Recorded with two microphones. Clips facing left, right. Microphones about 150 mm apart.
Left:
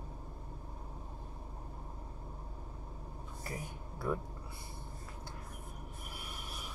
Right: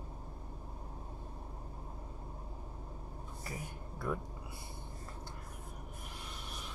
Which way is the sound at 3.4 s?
Centre (ahead or behind).